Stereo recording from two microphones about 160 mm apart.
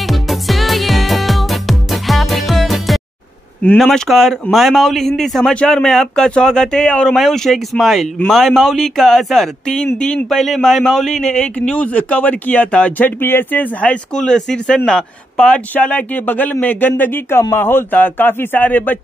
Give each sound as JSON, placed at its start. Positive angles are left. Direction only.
{"t": 0.0, "sound": "music", "side_deg": 0}
{"t": 3.6, "sound": "a man's voice", "side_deg": 5}